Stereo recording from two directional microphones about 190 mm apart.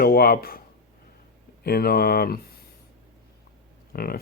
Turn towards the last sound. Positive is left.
turn(degrees=55)  # may be behind; listen again after turning